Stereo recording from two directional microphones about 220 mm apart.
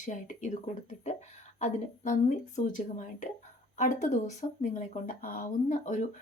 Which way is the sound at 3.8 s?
35° left (ahead or behind).